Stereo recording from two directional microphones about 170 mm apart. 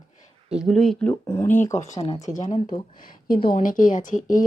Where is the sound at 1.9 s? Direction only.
35° left (ahead or behind).